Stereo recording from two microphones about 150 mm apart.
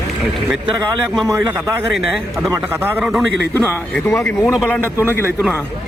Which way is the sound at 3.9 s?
10° left (ahead or behind).